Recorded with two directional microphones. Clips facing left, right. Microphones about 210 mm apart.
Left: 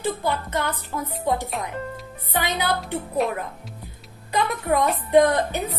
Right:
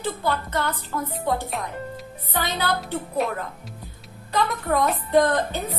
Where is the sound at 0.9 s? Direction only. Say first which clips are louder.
Right 2 dB; 20° left (ahead or behind).